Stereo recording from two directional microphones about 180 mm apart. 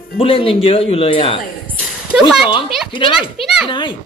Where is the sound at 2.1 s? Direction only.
Centre (ahead or behind).